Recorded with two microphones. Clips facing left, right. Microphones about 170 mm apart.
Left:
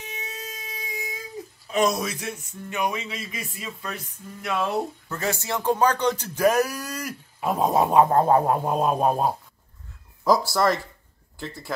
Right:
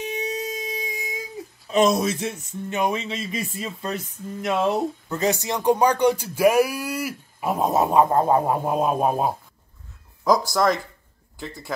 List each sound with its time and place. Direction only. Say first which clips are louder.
0.0 s a sound: right 10 dB; 20° right (ahead or behind)
1.7 s speech: right 4 dB; 25° right (ahead or behind); by 9.3 s 5° right (ahead or behind)
10.5 s speech: right 1 dB; 5° left (ahead or behind)